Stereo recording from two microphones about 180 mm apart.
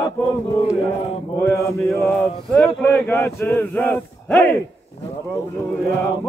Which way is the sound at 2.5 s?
5° left (ahead or behind).